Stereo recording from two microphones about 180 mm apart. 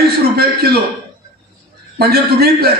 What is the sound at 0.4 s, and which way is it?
Speech, 60° right (ahead or behind).